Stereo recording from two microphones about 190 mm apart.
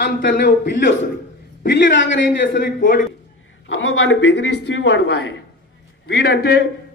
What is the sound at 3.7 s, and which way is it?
A man's voice, 75° left (ahead or behind).